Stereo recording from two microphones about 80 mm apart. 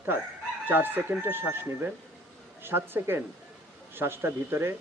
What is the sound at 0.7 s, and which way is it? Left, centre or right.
Speech, right.